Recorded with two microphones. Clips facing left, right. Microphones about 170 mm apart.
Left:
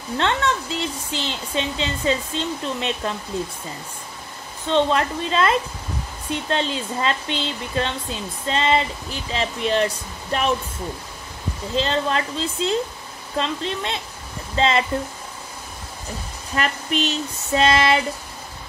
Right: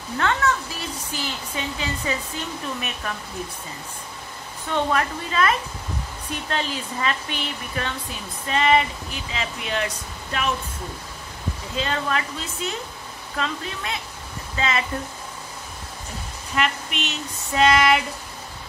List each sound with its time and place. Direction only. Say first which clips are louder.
0.2 s speech: even; 25° left (ahead or behind)
4.6 s speech: left 4 dB; 25° left (ahead or behind)
11.7 s speech: left 4 dB; 30° left (ahead or behind)
16.5 s a sound: left 2 dB; 35° left (ahead or behind)